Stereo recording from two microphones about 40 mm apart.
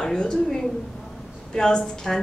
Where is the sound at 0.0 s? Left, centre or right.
Centre.